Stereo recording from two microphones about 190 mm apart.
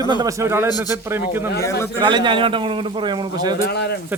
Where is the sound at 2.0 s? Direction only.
25° right (ahead or behind).